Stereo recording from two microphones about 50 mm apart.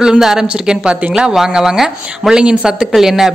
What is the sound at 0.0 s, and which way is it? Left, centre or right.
Speech, centre.